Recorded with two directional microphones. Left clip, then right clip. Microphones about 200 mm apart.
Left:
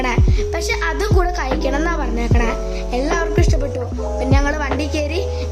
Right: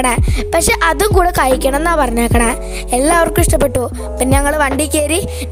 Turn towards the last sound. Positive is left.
turn(degrees=-55)  # may be behind; listen again after turning